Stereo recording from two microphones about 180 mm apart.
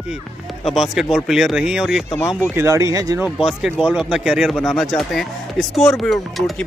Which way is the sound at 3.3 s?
Centre (ahead or behind).